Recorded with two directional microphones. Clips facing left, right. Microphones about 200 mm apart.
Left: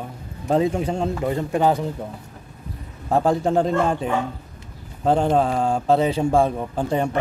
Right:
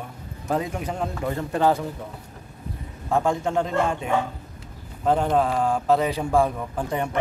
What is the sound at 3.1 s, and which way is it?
Speech, 35° left (ahead or behind).